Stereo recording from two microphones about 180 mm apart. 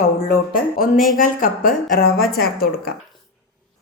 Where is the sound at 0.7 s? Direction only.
50° left (ahead or behind).